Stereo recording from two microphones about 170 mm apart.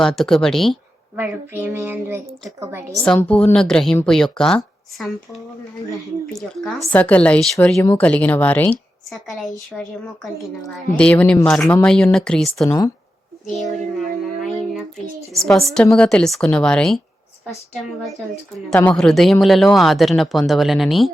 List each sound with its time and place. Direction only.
0.0 s a woman's voice: 5° left (ahead or behind)
1.1 s a woman's voice: 10° right (ahead or behind)
3.0 s a woman's voice: 10° left (ahead or behind)
7.8 s a woman's voice: 15° left (ahead or behind)
10.9 s a woman's voice: 10° left (ahead or behind)
12.6 s speech: 20° left (ahead or behind)
13.5 s a woman's voice: centre (ahead or behind)
15.4 s a woman's voice: 5° left (ahead or behind)
18.7 s a woman's voice: 5° left (ahead or behind)